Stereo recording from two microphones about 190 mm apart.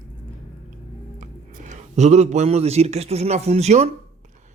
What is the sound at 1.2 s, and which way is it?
A man's voice, 40° right (ahead or behind).